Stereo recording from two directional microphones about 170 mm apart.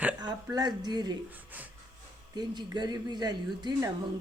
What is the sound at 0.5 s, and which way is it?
Speech, 25° right (ahead or behind).